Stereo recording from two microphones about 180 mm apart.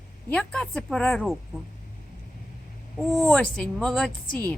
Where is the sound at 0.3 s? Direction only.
5° left (ahead or behind).